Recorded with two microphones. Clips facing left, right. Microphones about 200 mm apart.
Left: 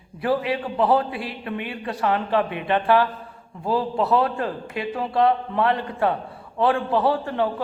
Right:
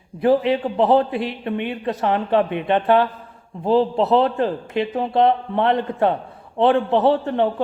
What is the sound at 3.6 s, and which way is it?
A man's voice, 25° right (ahead or behind).